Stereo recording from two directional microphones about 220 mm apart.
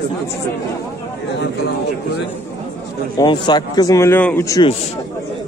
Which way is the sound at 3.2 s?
20° left (ahead or behind).